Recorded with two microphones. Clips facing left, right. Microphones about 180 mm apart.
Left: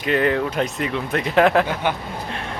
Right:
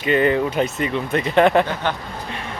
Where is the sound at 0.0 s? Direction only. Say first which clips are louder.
Right 2 dB; centre (ahead or behind).